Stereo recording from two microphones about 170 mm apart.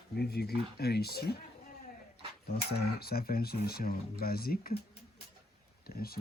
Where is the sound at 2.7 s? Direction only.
70° left (ahead or behind).